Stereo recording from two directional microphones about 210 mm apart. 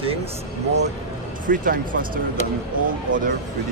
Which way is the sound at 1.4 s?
40° right (ahead or behind).